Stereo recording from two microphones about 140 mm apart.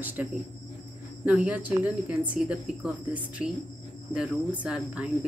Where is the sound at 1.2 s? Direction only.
10° right (ahead or behind).